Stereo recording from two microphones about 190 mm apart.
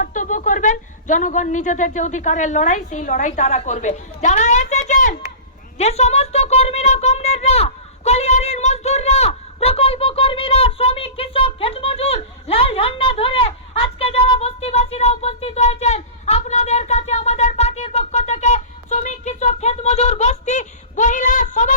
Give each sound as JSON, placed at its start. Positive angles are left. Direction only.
{"t": 0.0, "sound": "a woman's voice", "side_deg": 45}